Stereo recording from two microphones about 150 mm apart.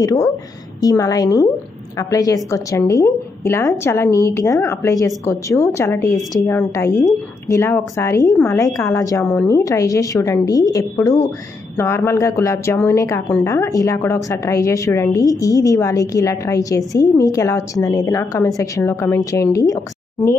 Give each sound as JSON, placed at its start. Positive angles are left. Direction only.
{"t": 0.0, "sound": "a woman's voice", "side_deg": 20}